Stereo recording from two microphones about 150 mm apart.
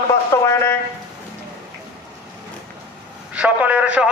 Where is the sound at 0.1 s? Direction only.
20° left (ahead or behind).